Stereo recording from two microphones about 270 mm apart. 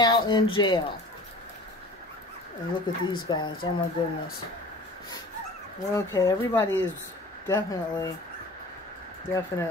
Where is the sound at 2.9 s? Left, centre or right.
Centre.